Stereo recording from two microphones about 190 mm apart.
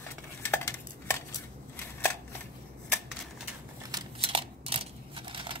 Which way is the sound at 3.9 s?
25° right (ahead or behind).